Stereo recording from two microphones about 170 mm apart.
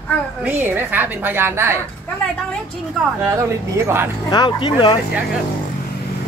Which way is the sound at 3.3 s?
15° right (ahead or behind).